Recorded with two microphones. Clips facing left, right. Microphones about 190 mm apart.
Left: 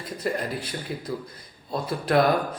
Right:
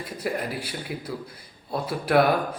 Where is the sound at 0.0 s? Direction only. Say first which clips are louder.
Left 1 dB; 10° right (ahead or behind).